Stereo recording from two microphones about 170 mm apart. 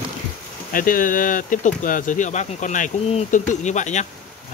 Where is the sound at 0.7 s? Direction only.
55° left (ahead or behind).